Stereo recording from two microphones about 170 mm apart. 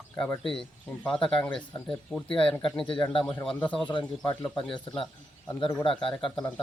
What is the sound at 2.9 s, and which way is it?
Speech, 30° left (ahead or behind).